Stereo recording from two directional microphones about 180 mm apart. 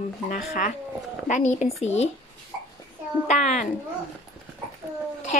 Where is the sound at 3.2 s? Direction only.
40° left (ahead or behind).